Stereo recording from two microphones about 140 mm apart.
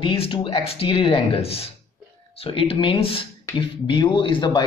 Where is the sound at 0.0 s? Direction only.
40° left (ahead or behind).